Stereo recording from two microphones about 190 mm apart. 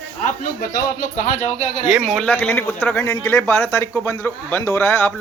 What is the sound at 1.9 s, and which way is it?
A man's voice, 5° right (ahead or behind).